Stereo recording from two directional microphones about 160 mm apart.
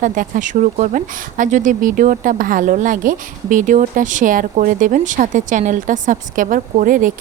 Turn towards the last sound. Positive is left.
turn(degrees=-55)  # may be behind; listen again after turning